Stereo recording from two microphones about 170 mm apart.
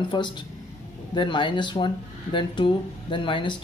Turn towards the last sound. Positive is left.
turn(degrees=30)  # may be behind; listen again after turning